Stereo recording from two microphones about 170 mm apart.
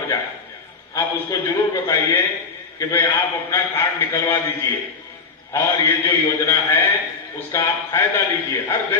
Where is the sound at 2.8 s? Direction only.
20° left (ahead or behind).